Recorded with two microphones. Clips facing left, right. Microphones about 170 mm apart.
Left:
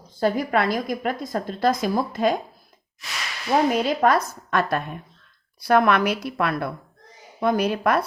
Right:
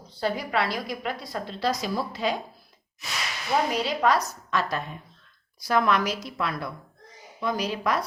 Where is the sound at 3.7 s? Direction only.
50° left (ahead or behind).